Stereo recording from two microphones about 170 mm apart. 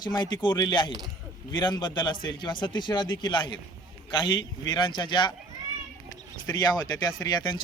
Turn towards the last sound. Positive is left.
turn(degrees=25)  # may be behind; listen again after turning